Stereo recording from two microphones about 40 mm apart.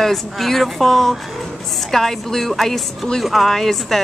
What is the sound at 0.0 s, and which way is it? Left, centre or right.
Speech, centre.